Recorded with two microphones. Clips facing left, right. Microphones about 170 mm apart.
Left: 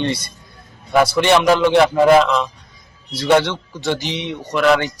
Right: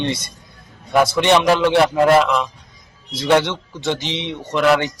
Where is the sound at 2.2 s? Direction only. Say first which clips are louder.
Left 1 dB; 10° right (ahead or behind).